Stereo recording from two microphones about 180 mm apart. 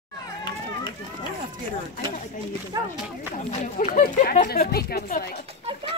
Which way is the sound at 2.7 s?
20° right (ahead or behind).